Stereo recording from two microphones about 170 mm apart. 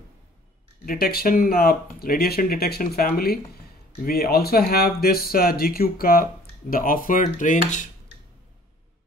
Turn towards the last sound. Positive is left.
turn(degrees=50)  # may be behind; listen again after turning